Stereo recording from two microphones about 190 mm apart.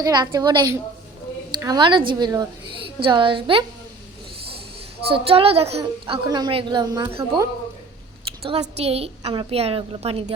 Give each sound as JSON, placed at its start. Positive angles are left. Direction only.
{"t": 0.0, "sound": "a woman's voice", "side_deg": -20}
{"t": 5.0, "sound": "a woman's voice", "side_deg": -30}
{"t": 8.8, "sound": "a woman's voice", "side_deg": -30}